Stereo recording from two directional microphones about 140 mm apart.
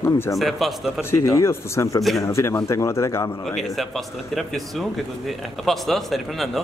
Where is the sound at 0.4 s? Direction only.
Centre (ahead or behind).